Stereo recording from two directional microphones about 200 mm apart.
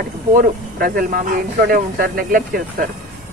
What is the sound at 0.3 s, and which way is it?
Speech, 45° right (ahead or behind).